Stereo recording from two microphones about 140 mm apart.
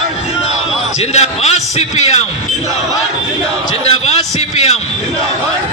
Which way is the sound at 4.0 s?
50° left (ahead or behind).